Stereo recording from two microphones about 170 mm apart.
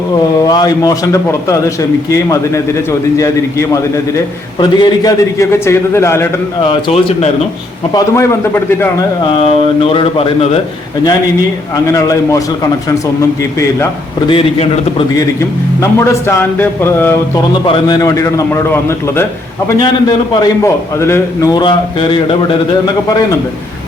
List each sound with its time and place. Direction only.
0.3 s a man's voice: 25° left (ahead or behind)
6.6 s speech: 30° left (ahead or behind)
7.9 s a man's voice: 15° left (ahead or behind)
9.4 s speech: 35° left (ahead or behind)
11.9 s a man's voice: 20° left (ahead or behind)
14.3 s speech: 30° left (ahead or behind)
15.1 s a man's voice: 15° left (ahead or behind)
17.7 s a man's voice: 25° left (ahead or behind)
20.4 s a man's voice: 15° left (ahead or behind)